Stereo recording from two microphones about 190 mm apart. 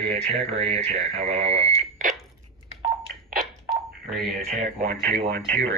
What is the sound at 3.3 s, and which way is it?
Telephone, 50° right (ahead or behind).